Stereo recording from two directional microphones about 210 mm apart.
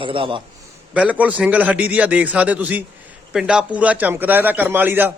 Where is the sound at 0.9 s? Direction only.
5° right (ahead or behind).